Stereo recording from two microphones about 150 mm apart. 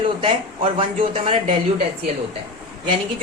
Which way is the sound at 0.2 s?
35° right (ahead or behind).